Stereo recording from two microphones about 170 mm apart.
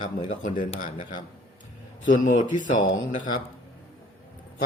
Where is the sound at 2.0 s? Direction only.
50° left (ahead or behind).